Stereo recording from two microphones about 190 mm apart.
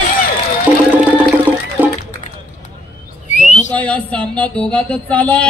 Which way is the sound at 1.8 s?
10° right (ahead or behind).